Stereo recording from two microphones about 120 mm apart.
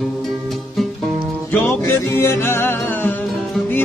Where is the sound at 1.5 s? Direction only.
20° left (ahead or behind).